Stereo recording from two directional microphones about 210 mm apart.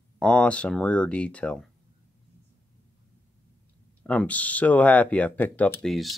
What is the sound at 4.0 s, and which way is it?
Speech, 5° left (ahead or behind).